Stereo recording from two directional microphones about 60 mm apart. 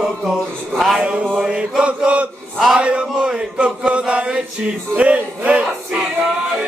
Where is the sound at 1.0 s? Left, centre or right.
Centre.